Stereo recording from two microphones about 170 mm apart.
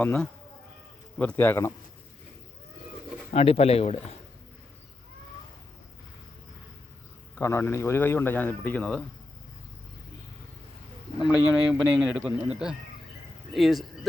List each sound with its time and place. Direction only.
0.0 s a man's voice: 10° left (ahead or behind)
3.3 s speech: 35° left (ahead or behind)
7.3 s a man's voice: 15° left (ahead or behind)
11.2 s speech: 5° right (ahead or behind)